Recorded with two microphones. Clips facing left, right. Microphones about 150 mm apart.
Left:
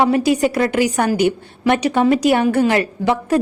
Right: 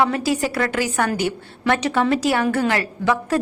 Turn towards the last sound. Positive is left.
turn(degrees=20)  # may be behind; listen again after turning